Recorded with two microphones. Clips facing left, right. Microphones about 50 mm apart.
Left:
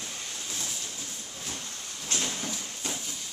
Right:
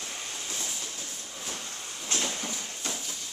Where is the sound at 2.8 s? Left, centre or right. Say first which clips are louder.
Left 1 dB; centre.